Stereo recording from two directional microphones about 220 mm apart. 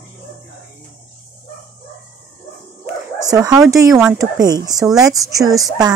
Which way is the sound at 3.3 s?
15° right (ahead or behind).